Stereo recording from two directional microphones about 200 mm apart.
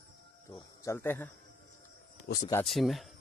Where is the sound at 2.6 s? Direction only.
Centre (ahead or behind).